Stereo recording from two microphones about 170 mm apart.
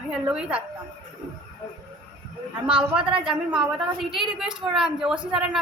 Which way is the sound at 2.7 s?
5° right (ahead or behind).